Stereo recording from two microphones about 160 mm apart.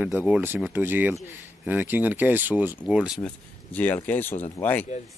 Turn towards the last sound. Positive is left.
turn(degrees=10)  # may be behind; listen again after turning